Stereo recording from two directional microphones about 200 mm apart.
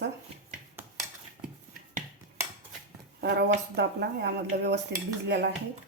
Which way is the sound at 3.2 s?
55° right (ahead or behind).